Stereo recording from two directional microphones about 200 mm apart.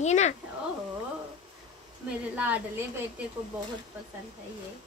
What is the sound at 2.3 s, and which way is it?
Speech, 5° right (ahead or behind).